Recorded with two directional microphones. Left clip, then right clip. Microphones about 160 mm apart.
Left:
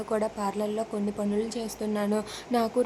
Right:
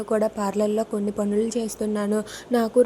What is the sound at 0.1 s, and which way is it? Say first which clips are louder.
A woman's voice: right 5 dB; 25° right (ahead or behind).